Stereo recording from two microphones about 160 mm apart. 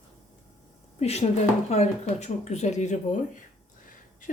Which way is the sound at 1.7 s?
45° left (ahead or behind).